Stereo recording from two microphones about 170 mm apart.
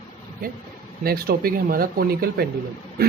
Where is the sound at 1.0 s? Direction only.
65° right (ahead or behind).